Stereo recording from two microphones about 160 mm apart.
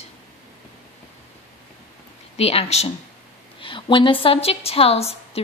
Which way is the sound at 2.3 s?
40° left (ahead or behind).